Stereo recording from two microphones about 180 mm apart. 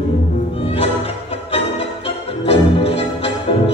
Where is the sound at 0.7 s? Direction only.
35° left (ahead or behind).